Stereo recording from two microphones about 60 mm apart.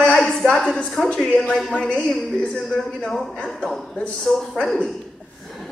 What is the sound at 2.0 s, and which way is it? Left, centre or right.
A man's voice, centre.